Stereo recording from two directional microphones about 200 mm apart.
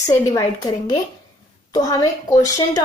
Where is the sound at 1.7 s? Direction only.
20° left (ahead or behind).